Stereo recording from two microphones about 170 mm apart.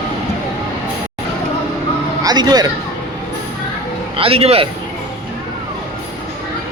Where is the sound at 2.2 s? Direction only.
25° right (ahead or behind).